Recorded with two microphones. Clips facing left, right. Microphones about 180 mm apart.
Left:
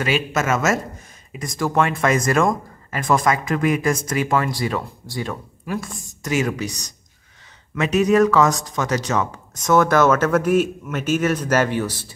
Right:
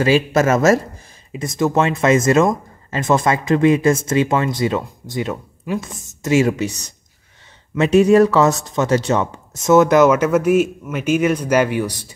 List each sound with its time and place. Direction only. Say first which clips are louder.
0.0 s speech: right 7 dB; 35° right (ahead or behind); by 12.1 s 15° right (ahead or behind)